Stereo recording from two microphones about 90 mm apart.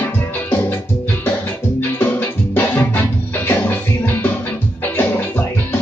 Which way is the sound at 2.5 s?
25° left (ahead or behind).